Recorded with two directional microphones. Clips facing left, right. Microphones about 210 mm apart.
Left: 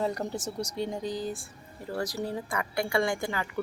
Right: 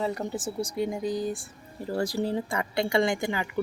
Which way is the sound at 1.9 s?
25° right (ahead or behind).